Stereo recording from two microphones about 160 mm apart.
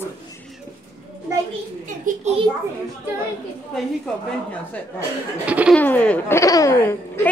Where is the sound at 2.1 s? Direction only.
55° right (ahead or behind).